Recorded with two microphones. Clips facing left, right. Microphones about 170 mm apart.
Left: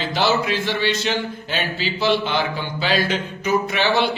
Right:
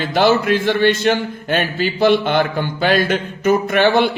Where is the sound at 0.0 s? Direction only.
50° right (ahead or behind).